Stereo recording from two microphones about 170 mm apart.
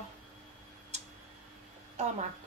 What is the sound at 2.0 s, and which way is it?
Speech, 45° right (ahead or behind).